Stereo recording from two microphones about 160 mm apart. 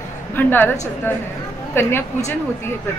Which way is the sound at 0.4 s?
10° left (ahead or behind).